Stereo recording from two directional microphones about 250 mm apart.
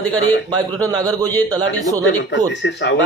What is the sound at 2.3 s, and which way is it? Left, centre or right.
Speech, left.